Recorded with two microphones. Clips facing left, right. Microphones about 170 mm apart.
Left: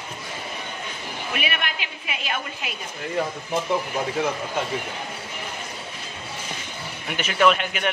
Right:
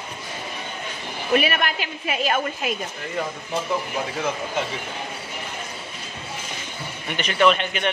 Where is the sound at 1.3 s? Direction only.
40° right (ahead or behind).